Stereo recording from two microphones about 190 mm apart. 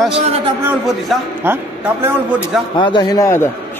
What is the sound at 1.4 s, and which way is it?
A man's voice, 10° right (ahead or behind).